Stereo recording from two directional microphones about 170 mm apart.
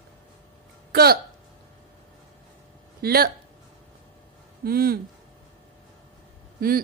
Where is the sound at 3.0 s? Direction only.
65° right (ahead or behind).